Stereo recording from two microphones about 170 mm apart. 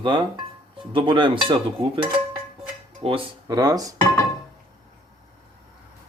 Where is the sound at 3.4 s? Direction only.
20° right (ahead or behind).